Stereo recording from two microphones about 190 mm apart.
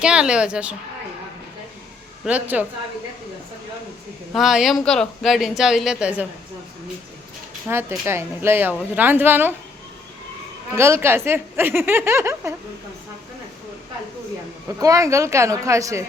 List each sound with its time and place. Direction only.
0.0 s speech: 5° right (ahead or behind)
2.2 s a woman's voice: 10° right (ahead or behind)
4.4 s speech: centre (ahead or behind)
7.7 s a woman's voice: 10° right (ahead or behind)
10.8 s a woman's voice: 15° right (ahead or behind)
14.8 s a woman's voice: 15° right (ahead or behind)